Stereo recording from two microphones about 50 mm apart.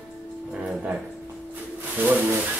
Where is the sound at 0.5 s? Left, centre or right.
Right.